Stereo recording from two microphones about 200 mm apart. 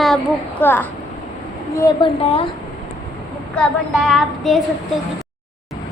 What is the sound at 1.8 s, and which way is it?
Speech, 25° left (ahead or behind).